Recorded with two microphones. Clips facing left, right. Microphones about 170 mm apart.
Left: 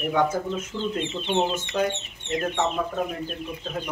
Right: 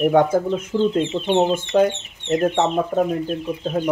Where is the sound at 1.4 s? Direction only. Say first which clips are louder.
Right 9 dB; 50° right (ahead or behind).